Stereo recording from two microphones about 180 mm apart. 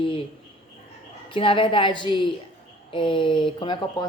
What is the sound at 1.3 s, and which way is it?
A woman's voice, 30° left (ahead or behind).